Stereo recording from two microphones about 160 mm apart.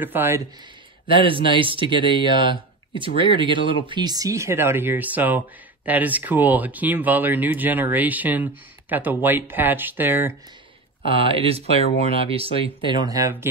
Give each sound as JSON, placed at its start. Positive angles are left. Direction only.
{"t": 0.0, "sound": "speech", "side_deg": -15}
{"t": 1.0, "sound": "speech", "side_deg": -30}
{"t": 11.1, "sound": "speech", "side_deg": -35}
{"t": 13.0, "sound": "speech", "side_deg": -20}